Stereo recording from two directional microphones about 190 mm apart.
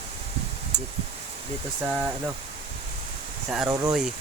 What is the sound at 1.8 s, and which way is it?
Speech, 10° right (ahead or behind).